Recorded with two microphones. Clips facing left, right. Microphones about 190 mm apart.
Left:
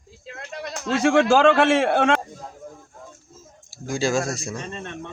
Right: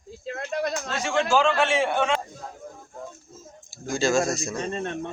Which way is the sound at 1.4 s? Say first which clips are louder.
Left 5 dB; 80° left.